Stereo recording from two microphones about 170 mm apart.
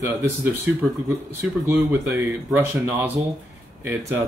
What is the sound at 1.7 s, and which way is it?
Speech, 15° right (ahead or behind).